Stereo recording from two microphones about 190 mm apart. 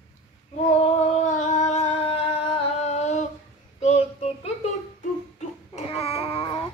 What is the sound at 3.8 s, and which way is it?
Child singing, 35° left (ahead or behind).